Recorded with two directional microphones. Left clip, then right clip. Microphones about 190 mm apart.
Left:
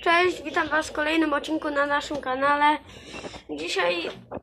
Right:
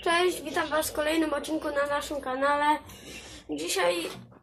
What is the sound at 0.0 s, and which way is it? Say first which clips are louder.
A woman's voice: left 4 dB; centre (ahead or behind).